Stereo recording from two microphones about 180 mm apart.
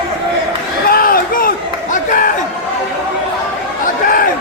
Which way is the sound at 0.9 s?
55° left (ahead or behind).